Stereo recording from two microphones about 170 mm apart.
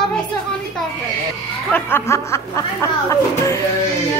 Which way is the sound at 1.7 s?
15° left (ahead or behind).